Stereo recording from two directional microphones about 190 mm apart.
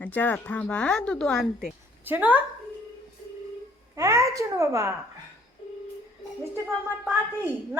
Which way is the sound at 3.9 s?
15° right (ahead or behind).